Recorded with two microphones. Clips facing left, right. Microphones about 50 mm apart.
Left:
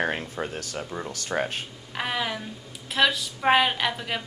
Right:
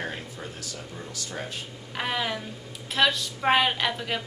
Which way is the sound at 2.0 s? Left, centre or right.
Centre.